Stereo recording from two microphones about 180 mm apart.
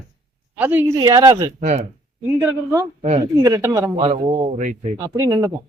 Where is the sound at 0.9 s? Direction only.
20° right (ahead or behind).